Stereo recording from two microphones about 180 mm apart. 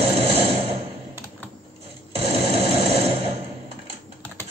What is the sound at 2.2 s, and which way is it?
Sewing machine, 35° right (ahead or behind).